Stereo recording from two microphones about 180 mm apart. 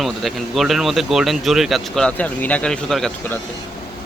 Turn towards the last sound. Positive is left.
turn(degrees=5)  # may be behind; listen again after turning